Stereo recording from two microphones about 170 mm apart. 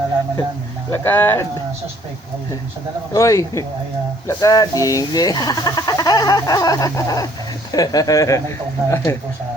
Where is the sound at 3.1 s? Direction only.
20° left (ahead or behind).